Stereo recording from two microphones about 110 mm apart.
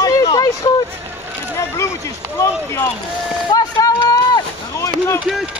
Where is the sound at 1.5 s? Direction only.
25° left (ahead or behind).